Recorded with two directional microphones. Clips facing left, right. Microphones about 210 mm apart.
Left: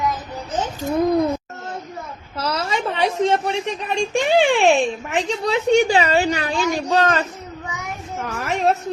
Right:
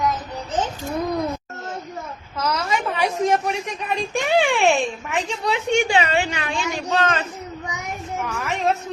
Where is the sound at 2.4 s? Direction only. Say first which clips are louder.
Even; 30° left (ahead or behind).